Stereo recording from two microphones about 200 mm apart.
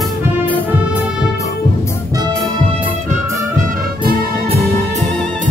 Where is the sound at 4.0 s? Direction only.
30° right (ahead or behind).